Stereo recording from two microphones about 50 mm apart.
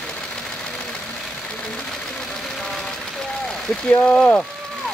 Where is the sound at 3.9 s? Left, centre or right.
Left.